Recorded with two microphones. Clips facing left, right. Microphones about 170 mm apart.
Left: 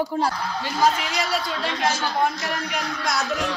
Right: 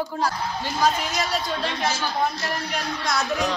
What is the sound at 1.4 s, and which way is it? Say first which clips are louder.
Speech: even; 25° right (ahead or behind).